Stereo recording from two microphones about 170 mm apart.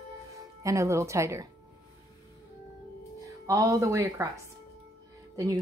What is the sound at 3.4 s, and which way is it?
Speech, 20° right (ahead or behind).